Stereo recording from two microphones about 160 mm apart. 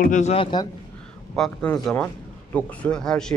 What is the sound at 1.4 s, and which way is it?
A man's voice, 5° left (ahead or behind).